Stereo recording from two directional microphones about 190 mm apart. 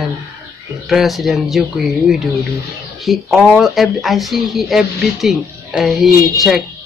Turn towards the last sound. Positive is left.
turn(degrees=0)  # may be behind; listen again after turning